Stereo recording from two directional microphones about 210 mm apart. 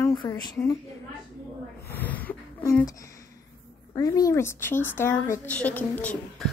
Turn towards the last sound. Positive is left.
turn(degrees=5)  # may be behind; listen again after turning